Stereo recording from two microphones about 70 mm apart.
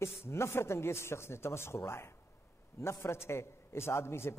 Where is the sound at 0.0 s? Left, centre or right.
Left.